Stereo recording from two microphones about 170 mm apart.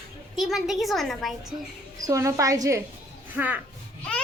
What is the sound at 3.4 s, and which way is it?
Speech, 10° right (ahead or behind).